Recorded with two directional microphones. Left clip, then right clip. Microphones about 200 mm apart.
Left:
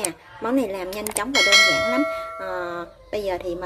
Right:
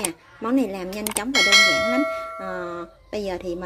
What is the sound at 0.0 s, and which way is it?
Speech, 15° right (ahead or behind).